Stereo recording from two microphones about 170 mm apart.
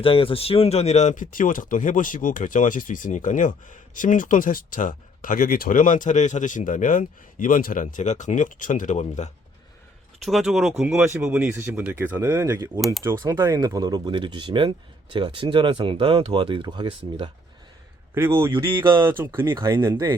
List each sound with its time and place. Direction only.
0.0 s speech: 35° left (ahead or behind)
10.2 s speech: centre (ahead or behind)
12.2 s speech: 20° right (ahead or behind)
18.1 s speech: 15° right (ahead or behind)